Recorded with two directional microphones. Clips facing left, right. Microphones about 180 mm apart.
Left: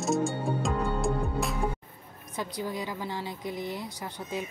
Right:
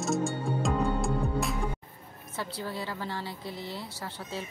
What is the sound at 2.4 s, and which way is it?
A woman's voice, 15° left (ahead or behind).